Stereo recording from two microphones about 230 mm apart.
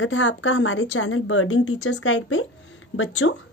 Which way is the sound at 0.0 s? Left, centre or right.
Left.